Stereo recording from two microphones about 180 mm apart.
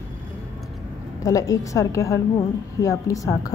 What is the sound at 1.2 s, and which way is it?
A woman's voice, 20° left (ahead or behind).